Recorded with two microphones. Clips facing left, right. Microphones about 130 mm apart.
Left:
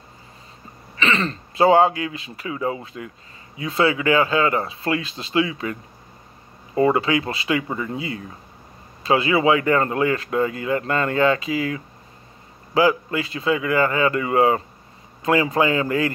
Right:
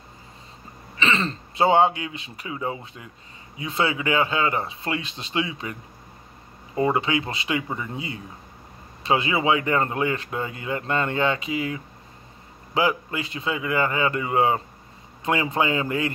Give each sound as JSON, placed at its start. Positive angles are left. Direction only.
{"t": 0.9, "sound": "speech", "side_deg": -30}
{"t": 6.8, "sound": "speech", "side_deg": -25}
{"t": 9.0, "sound": "speech", "side_deg": -25}